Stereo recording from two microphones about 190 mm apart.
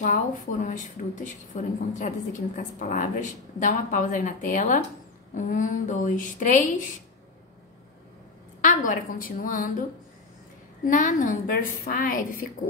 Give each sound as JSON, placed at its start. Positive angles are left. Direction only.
{"t": 0.0, "sound": "a woman's voice", "side_deg": 40}
{"t": 8.5, "sound": "a woman's voice", "side_deg": 45}
{"t": 10.9, "sound": "a woman's voice", "side_deg": 45}